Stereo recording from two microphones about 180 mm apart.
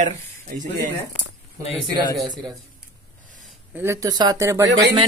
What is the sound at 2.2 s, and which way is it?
Speech, 20° right (ahead or behind).